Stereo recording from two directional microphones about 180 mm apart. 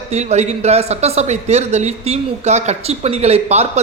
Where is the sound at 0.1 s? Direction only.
40° right (ahead or behind).